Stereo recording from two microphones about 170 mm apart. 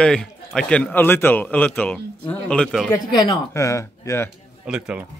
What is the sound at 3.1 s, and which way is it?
Speech, 20° left (ahead or behind).